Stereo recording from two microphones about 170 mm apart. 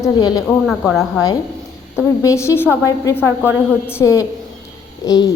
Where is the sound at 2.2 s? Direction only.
15° left (ahead or behind).